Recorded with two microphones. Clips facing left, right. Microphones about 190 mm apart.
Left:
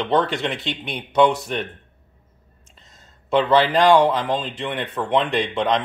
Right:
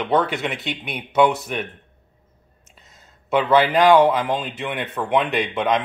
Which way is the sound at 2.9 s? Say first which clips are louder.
Left 1 dB; centre (ahead or behind).